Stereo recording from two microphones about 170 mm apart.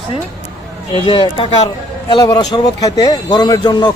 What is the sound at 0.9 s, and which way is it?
A man's voice, 30° left (ahead or behind).